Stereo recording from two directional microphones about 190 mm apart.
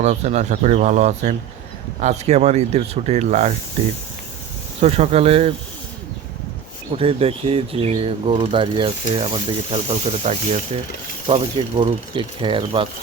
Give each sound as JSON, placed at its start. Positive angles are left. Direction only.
{"t": 0.0, "sound": "speech", "side_deg": -35}
{"t": 4.8, "sound": "speech", "side_deg": -35}
{"t": 6.9, "sound": "speech", "side_deg": -30}